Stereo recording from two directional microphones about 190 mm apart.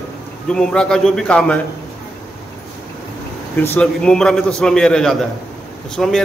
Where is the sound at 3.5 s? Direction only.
10° left (ahead or behind).